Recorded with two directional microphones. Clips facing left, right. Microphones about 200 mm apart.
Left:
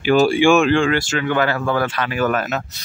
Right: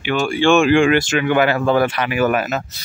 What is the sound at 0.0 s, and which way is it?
Speech, 40° left (ahead or behind).